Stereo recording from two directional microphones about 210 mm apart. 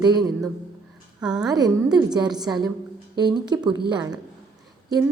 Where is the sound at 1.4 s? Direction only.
20° right (ahead or behind).